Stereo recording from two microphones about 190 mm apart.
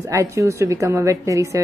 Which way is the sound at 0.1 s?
15° right (ahead or behind).